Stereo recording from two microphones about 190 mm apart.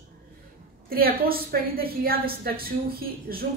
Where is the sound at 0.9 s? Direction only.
50° right (ahead or behind).